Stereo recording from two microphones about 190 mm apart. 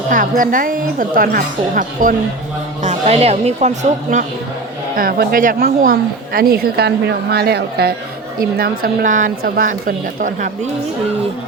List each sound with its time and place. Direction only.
0.1 s a woman's voice: 45° right (ahead or behind)
2.8 s speech: 35° right (ahead or behind)
4.9 s a woman's voice: 50° right (ahead or behind)